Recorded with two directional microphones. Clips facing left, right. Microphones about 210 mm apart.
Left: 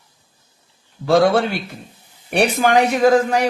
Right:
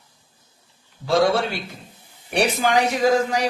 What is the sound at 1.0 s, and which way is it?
Speech, 55° left (ahead or behind).